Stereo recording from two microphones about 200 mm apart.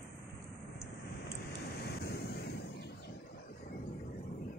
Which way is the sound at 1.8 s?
55° left (ahead or behind).